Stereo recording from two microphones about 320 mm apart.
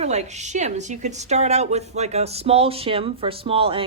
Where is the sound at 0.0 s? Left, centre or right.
Right.